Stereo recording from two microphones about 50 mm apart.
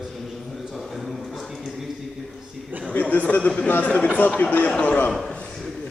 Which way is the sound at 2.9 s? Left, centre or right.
Left.